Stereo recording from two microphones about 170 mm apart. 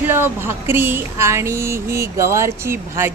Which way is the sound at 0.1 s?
15° right (ahead or behind).